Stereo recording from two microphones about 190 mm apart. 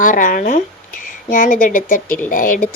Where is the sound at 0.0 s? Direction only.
45° left (ahead or behind).